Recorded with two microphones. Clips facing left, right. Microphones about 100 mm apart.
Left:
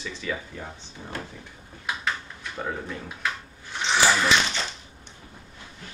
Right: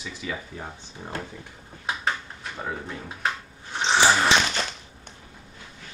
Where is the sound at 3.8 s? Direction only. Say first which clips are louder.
Right 2 dB; 35° right (ahead or behind).